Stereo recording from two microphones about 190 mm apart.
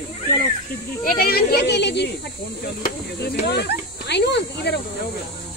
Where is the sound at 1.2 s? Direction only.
55° left (ahead or behind).